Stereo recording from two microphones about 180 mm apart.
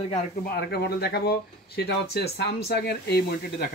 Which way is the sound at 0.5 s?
65° left (ahead or behind).